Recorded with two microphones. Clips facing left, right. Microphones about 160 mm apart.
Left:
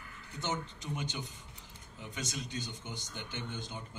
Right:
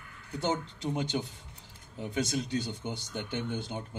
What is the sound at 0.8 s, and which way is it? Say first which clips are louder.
A man's voice: right 11 dB; 60° right (ahead or behind).